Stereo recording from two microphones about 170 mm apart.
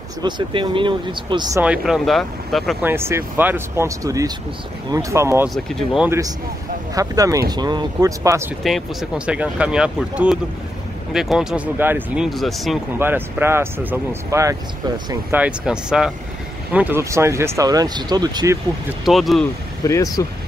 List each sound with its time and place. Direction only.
0.2 s speech: 30° right (ahead or behind)
1.6 s speech: 5° right (ahead or behind)
2.8 s speech: 15° right (ahead or behind)
5.5 s speech: centre (ahead or behind)
7.0 s speech: 20° right (ahead or behind)
8.6 s speech: 5° right (ahead or behind)
12.3 s speech: centre (ahead or behind)
13.0 s speech: 15° right (ahead or behind)
15.3 s speech: 5° right (ahead or behind); by 18.6 s 20° right (ahead or behind)
19.0 s speech: centre (ahead or behind)
19.8 s speech: 20° left (ahead or behind)